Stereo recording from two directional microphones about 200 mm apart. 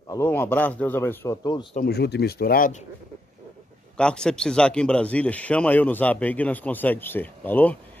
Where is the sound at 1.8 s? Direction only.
55° left (ahead or behind).